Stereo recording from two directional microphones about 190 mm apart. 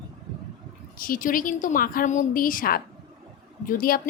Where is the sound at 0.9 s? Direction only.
45° left (ahead or behind).